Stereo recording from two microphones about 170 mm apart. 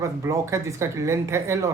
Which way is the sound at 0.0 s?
15° right (ahead or behind).